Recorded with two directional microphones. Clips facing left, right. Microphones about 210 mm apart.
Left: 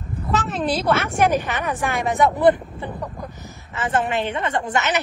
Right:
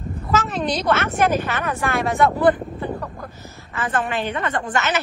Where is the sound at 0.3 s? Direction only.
Centre (ahead or behind).